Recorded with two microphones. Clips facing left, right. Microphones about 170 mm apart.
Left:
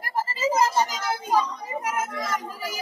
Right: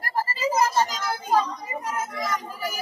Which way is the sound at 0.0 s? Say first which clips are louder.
Even; 20° left (ahead or behind).